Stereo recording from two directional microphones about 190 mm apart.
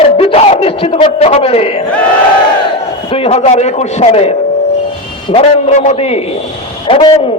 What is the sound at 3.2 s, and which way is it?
A man's voice, 35° left (ahead or behind).